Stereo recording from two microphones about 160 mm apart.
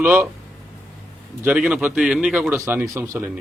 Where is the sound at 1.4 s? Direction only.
5° right (ahead or behind).